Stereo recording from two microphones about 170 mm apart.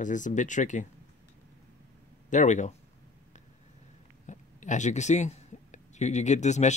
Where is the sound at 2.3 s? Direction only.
45° left (ahead or behind).